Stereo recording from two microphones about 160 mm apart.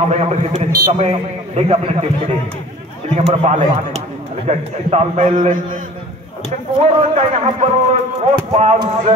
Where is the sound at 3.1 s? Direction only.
45° right (ahead or behind).